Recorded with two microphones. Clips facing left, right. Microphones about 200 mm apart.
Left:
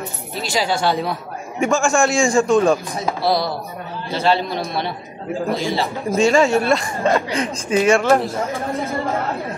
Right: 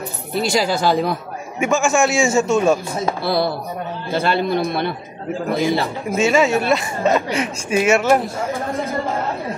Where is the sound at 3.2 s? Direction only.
55° right (ahead or behind).